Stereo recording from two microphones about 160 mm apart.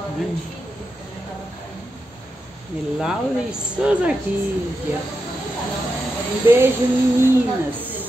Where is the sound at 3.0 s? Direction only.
5° right (ahead or behind).